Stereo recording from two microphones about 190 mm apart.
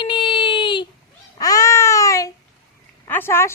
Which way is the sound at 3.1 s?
10° left (ahead or behind).